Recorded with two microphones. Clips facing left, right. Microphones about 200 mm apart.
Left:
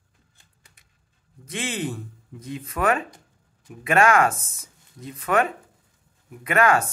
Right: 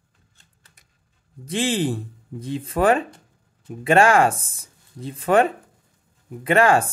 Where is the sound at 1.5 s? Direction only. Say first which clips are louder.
Right 7 dB; 30° right (ahead or behind).